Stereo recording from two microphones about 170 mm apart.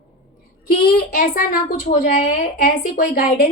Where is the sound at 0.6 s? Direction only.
60° left (ahead or behind).